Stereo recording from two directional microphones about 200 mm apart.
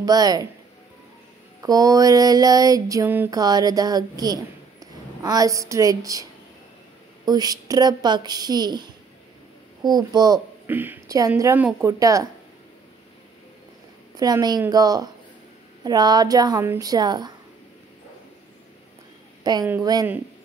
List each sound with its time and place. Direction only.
0.0 s a woman's voice: 20° right (ahead or behind)
1.6 s a sound: 15° right (ahead or behind)
7.2 s a woman's voice: 20° right (ahead or behind)
10.7 s a sound: 10° right (ahead or behind)
14.1 s a woman's voice: 20° right (ahead or behind)
19.4 s a woman's voice: 20° right (ahead or behind)